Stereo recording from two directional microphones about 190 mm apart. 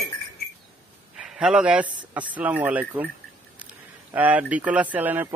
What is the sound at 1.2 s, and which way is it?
Speech, 5° right (ahead or behind).